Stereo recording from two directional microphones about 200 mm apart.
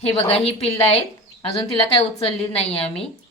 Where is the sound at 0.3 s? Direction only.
30° left (ahead or behind).